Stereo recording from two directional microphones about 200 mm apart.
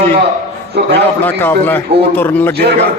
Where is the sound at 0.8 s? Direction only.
55° right (ahead or behind).